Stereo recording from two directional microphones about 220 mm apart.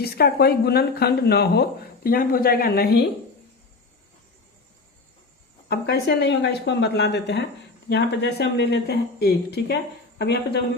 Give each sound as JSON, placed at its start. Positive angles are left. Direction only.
{"t": 0.0, "sound": "speech", "side_deg": 45}
{"t": 5.6, "sound": "speech", "side_deg": 45}